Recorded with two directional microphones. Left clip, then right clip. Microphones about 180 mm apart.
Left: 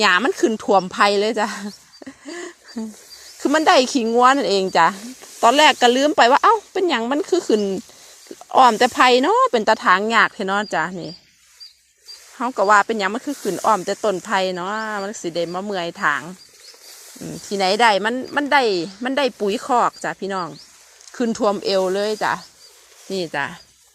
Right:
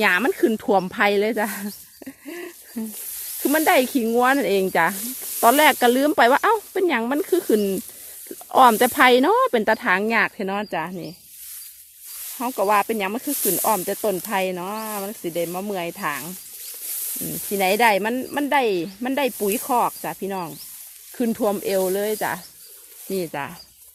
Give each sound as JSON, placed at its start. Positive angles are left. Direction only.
{"t": 0.0, "sound": "speech", "side_deg": -10}
{"t": 3.4, "sound": "speech", "side_deg": -5}
{"t": 12.5, "sound": "speech", "side_deg": 0}
{"t": 14.6, "sound": "speech", "side_deg": 5}
{"t": 19.4, "sound": "speech", "side_deg": -5}
{"t": 21.3, "sound": "speech", "side_deg": -5}